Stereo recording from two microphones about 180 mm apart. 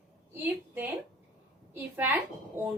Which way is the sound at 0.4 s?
10° right (ahead or behind).